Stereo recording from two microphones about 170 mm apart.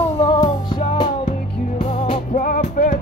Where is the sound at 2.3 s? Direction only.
55° left (ahead or behind).